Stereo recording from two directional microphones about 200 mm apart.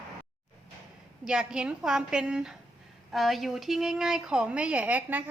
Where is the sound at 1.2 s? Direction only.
5° right (ahead or behind).